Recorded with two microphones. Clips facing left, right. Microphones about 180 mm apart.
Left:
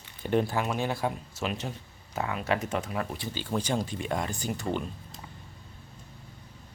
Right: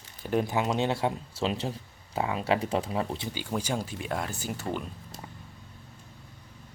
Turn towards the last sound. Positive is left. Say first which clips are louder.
# left 2 dB
turn(degrees=-5)  # may be behind; listen again after turning